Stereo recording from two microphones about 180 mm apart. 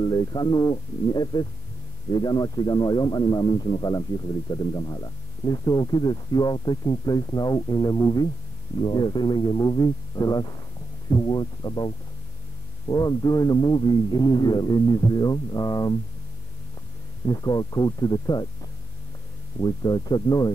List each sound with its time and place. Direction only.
0.0 s a man's voice: 20° left (ahead or behind)
17.3 s a man's voice: 20° left (ahead or behind)
19.6 s a man's voice: 20° left (ahead or behind)